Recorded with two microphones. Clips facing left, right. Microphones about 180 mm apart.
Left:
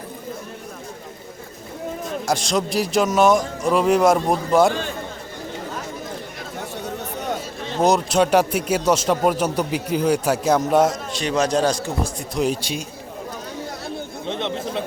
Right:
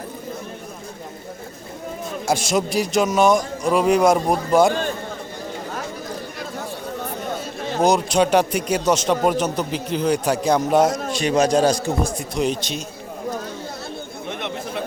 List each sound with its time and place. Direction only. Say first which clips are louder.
2.2 s speech: right 2 dB; 5° right (ahead or behind)
7.8 s speech: even; centre (ahead or behind)
11.2 s a man's voice: right 2 dB; 10° right (ahead or behind)
12.3 s speech: even; 5° left (ahead or behind)
14.3 s chatter: left 3 dB; 25° left (ahead or behind)